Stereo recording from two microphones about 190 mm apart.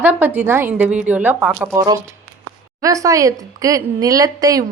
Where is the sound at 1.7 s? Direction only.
20° right (ahead or behind).